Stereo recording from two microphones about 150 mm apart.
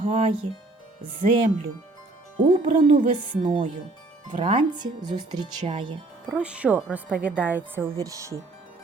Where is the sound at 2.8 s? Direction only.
65° right (ahead or behind).